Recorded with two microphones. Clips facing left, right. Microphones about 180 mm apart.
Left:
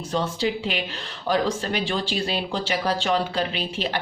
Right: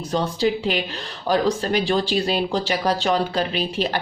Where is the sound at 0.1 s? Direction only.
40° right (ahead or behind).